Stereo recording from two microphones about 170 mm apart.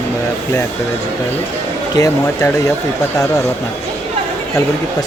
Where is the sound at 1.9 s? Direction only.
20° left (ahead or behind).